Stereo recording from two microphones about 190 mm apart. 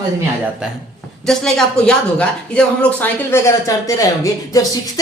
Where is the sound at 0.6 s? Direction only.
5° right (ahead or behind).